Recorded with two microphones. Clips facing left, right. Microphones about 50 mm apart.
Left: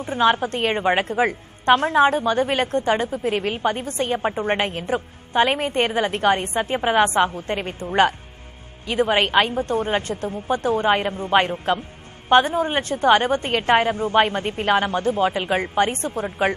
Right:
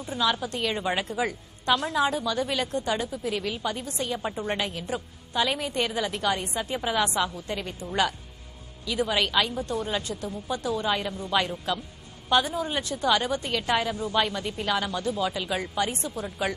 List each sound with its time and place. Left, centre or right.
0.0 s a woman's voice: left